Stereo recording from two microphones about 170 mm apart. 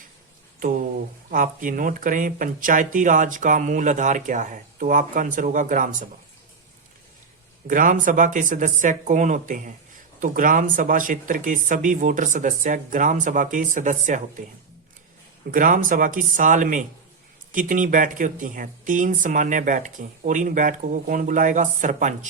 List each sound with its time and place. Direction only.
0.6 s a sound: 50° right (ahead or behind)
1.3 s speech: 50° right (ahead or behind)
7.7 s speech: 55° right (ahead or behind)
15.5 s speech: 55° right (ahead or behind)